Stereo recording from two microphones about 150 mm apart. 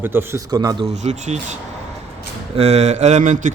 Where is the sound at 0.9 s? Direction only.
50° right (ahead or behind).